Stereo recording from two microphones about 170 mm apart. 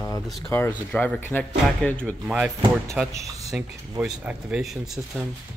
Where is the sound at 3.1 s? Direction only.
20° right (ahead or behind).